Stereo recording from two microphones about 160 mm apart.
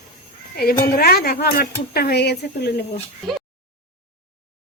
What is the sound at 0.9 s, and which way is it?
Speech, 75° left (ahead or behind).